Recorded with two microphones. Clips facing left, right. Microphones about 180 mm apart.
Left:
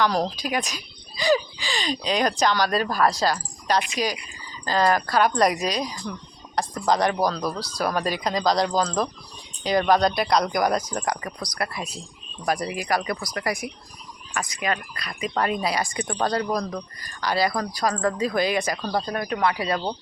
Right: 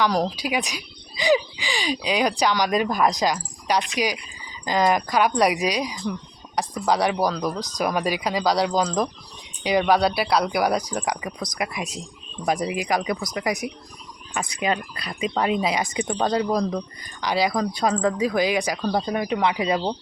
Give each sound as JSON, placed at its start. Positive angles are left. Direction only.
{"t": 0.0, "sound": "speech", "side_deg": -10}